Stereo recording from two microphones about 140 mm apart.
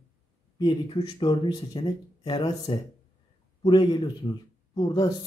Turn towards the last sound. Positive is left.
turn(degrees=30)  # may be behind; listen again after turning